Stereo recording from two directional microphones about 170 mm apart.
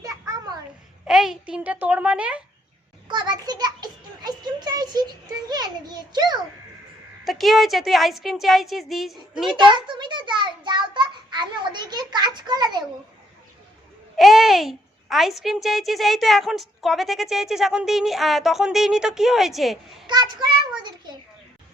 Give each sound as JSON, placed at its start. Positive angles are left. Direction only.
{"t": 0.0, "sound": "a sound", "side_deg": -20}
{"t": 1.0, "sound": "a child's voice", "side_deg": 0}
{"t": 3.1, "sound": "a child's voice", "side_deg": -25}
{"t": 7.3, "sound": "a child's voice", "side_deg": 0}
{"t": 9.7, "sound": "a child's voice", "side_deg": -25}
{"t": 14.2, "sound": "a child's voice", "side_deg": 0}
{"t": 20.1, "sound": "a child's voice", "side_deg": -25}